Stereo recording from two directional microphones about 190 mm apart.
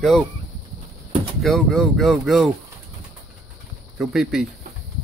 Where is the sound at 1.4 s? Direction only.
Centre (ahead or behind).